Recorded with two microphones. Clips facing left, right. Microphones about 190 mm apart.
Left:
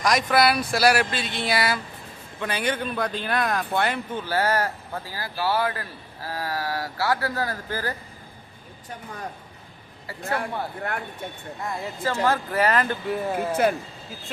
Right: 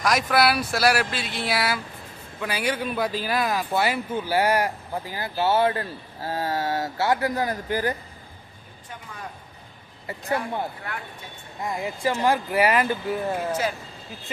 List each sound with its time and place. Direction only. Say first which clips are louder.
0.0 s speech: left 1 dB; 5° right (ahead or behind)
10.1 s speech: right 1 dB; 15° right (ahead or behind)
11.6 s speech: right 3 dB; 15° right (ahead or behind); by 13.4 s centre (ahead or behind)
13.5 s speech: left 4 dB; 60° left (ahead or behind)